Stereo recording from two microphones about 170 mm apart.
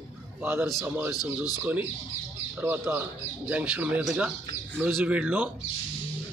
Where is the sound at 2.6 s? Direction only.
10° right (ahead or behind).